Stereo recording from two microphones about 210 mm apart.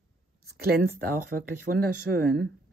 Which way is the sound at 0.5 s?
50° right (ahead or behind).